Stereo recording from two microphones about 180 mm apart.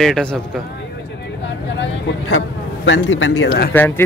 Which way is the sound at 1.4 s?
90° left.